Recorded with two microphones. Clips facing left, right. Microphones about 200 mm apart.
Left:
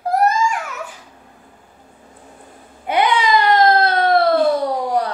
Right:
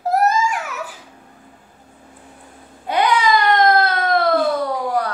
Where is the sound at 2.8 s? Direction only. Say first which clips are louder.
Even; 20° left (ahead or behind).